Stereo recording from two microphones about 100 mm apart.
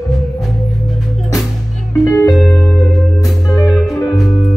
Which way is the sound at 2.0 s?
35° left (ahead or behind).